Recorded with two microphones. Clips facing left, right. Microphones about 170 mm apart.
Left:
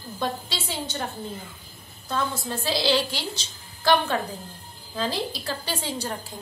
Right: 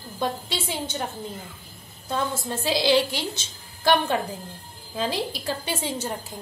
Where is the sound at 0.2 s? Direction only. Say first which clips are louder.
Right 2 dB; 10° right (ahead or behind).